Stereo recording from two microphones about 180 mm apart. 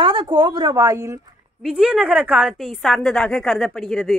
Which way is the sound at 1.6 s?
5° right (ahead or behind).